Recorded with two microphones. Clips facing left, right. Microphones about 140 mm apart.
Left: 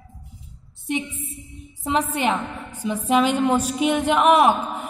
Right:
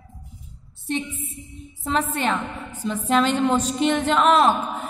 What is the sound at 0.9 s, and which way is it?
Speech, 15° left (ahead or behind).